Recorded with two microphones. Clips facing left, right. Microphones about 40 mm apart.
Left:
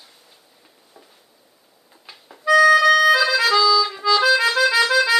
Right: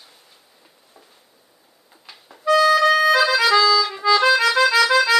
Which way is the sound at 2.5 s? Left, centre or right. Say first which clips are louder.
Left 3 dB; left.